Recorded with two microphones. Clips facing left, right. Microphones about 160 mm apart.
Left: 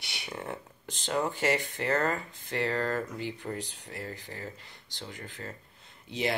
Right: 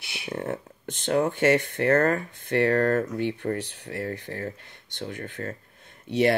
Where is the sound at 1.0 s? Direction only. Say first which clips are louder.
Right 7 dB; 55° right (ahead or behind).